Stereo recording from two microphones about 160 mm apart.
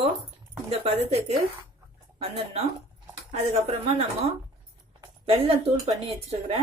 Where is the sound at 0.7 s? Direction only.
40° right (ahead or behind).